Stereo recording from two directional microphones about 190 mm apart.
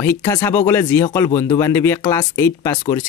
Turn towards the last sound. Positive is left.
turn(degrees=15)  # may be behind; listen again after turning